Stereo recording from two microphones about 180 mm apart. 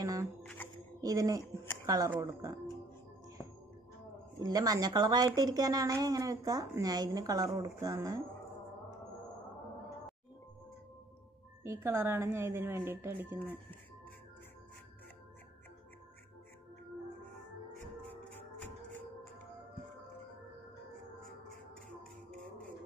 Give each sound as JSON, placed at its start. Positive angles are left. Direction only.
{"t": 0.0, "sound": "shuffling cards", "side_deg": -20}
{"t": 1.0, "sound": "speech", "side_deg": -20}
{"t": 4.4, "sound": "speech", "side_deg": -20}
{"t": 11.6, "sound": "speech", "side_deg": -15}